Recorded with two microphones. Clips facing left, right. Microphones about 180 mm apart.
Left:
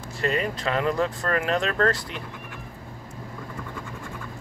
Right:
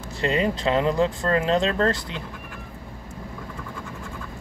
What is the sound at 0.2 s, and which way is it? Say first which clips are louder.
Speech: right 3 dB; 25° right (ahead or behind).